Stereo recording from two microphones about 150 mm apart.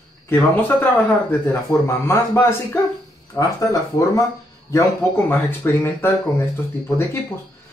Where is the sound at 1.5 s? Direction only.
15° left (ahead or behind).